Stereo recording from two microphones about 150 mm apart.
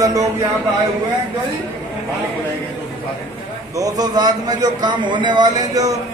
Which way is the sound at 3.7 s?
25° right (ahead or behind).